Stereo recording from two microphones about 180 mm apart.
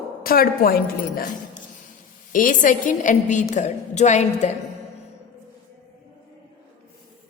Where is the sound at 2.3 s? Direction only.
45° left (ahead or behind).